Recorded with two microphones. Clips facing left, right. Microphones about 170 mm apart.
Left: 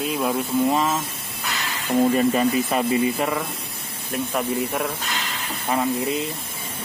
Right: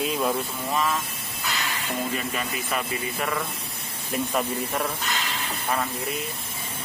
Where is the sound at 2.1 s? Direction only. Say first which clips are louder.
Left 11 dB; 35° left (ahead or behind).